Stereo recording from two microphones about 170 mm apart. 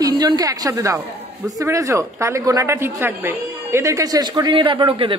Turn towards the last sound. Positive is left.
turn(degrees=-30)  # may be behind; listen again after turning